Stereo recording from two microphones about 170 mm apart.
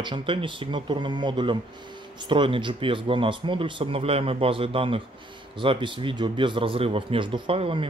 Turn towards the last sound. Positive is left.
turn(degrees=-30)  # may be behind; listen again after turning